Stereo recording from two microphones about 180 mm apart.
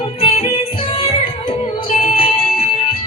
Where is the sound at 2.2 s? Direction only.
30° left (ahead or behind).